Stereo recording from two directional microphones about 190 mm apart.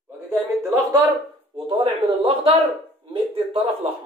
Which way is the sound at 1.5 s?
30° right (ahead or behind).